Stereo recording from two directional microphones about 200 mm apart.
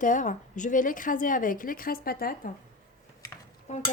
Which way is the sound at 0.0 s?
40° left (ahead or behind).